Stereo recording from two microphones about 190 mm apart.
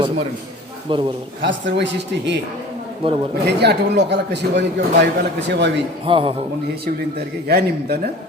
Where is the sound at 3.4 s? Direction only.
60° right (ahead or behind).